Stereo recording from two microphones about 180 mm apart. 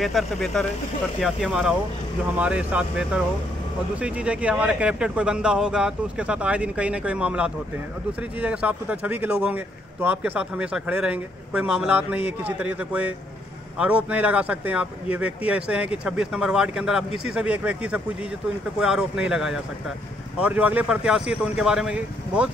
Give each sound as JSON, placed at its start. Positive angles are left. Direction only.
{"t": 0.0, "sound": "a man's voice", "side_deg": 0}